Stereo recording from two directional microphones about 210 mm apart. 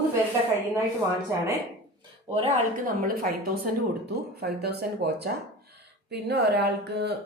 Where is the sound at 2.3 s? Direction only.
25° right (ahead or behind).